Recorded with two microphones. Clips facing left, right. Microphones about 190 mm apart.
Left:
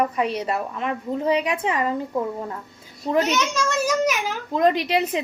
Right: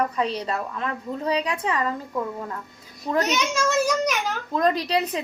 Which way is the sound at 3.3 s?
10° right (ahead or behind).